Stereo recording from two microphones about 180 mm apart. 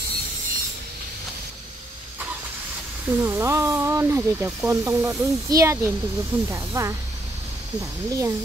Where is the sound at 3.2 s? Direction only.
15° right (ahead or behind).